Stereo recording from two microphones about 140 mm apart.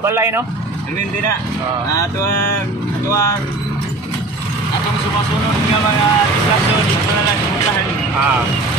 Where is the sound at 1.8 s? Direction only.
20° left (ahead or behind).